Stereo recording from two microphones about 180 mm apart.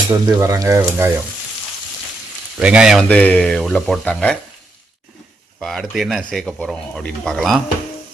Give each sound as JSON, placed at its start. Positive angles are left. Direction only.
{"t": 0.3, "sound": "speech", "side_deg": -15}
{"t": 2.6, "sound": "speech", "side_deg": -5}
{"t": 5.5, "sound": "speech", "side_deg": 0}